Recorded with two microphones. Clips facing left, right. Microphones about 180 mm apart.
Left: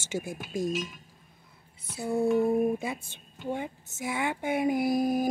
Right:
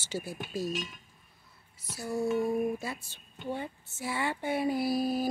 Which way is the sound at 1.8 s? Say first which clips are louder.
Left 4 dB; 55° left (ahead or behind).